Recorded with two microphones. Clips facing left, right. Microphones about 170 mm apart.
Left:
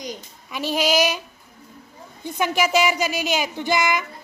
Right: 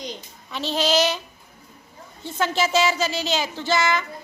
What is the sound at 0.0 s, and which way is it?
A child's voice, 10° left (ahead or behind).